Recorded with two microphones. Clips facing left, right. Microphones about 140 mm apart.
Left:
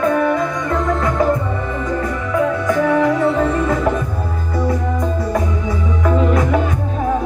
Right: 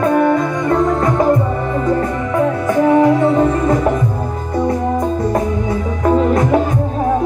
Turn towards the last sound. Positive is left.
turn(degrees=-35)  # may be behind; listen again after turning